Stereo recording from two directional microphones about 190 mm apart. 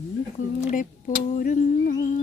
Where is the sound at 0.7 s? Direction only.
45° left (ahead or behind).